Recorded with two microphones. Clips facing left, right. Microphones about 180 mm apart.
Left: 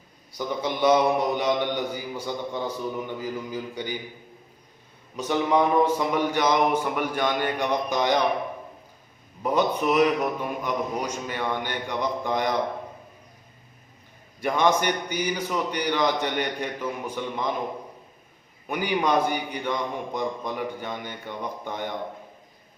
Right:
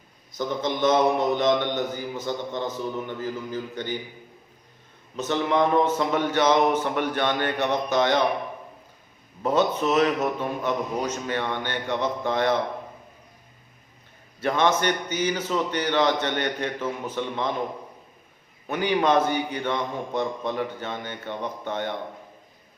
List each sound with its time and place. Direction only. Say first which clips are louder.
0.3 s a man's voice: right 1 dB; 10° left (ahead or behind)
5.1 s a man's voice: left 1 dB; 10° left (ahead or behind)
9.4 s a man's voice: right 1 dB; 10° left (ahead or behind)
14.4 s a man's voice: even; 15° left (ahead or behind)
18.7 s a man's voice: right 2 dB; 10° left (ahead or behind)